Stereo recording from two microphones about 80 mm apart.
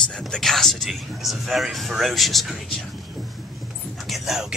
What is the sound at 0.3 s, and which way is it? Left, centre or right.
Speech, centre.